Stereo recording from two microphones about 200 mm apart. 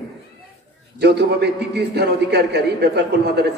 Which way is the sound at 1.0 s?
55° right (ahead or behind).